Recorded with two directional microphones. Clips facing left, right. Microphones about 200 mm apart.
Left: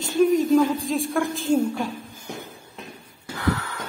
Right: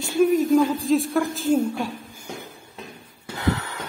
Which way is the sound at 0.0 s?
10° right (ahead or behind).